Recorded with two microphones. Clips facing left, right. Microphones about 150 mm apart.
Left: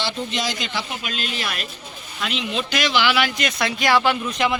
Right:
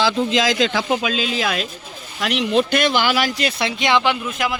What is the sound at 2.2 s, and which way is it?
Speech, 75° right (ahead or behind).